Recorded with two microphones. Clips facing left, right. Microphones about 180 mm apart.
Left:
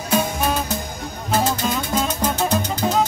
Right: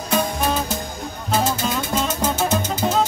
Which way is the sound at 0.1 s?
5° left (ahead or behind).